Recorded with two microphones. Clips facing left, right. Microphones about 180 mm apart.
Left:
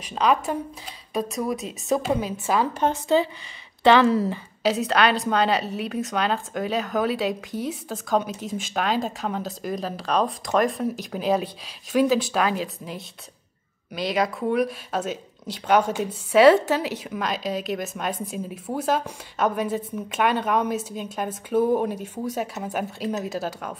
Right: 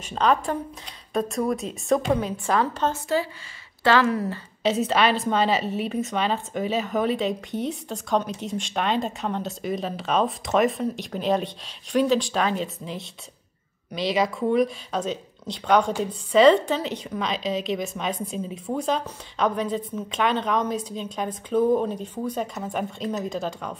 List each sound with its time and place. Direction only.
0.1 s a woman's voice: 5° left (ahead or behind); by 4.3 s 25° left (ahead or behind)
4.6 s a woman's voice: centre (ahead or behind)